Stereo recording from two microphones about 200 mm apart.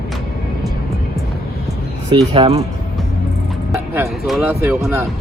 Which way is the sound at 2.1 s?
30° right (ahead or behind).